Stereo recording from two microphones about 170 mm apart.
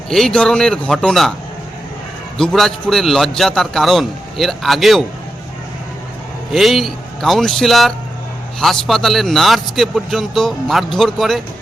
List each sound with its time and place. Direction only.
0.1 s a man's voice: centre (ahead or behind)
2.4 s a man's voice: centre (ahead or behind)
6.5 s a man's voice: centre (ahead or behind)